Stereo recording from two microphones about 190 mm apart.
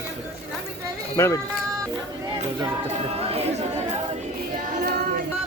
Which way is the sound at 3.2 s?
30° right (ahead or behind).